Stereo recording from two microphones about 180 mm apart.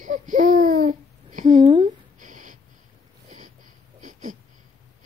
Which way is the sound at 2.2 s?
45° right (ahead or behind).